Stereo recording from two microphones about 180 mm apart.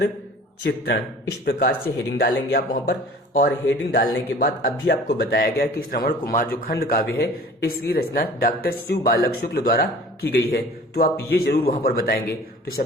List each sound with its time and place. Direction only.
0.6 s speech: 65° left (ahead or behind)